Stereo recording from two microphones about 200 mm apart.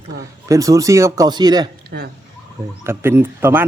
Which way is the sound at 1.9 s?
55° right (ahead or behind).